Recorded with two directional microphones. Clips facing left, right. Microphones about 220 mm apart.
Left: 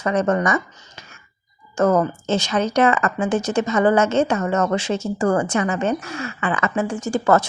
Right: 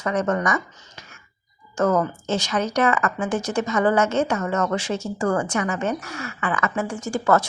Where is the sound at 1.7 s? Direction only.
25° left (ahead or behind).